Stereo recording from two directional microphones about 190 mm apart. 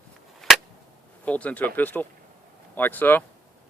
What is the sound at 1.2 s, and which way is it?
Speech, 5° left (ahead or behind).